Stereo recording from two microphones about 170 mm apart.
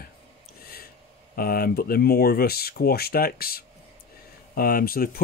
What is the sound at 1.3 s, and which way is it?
Speech, 60° left (ahead or behind).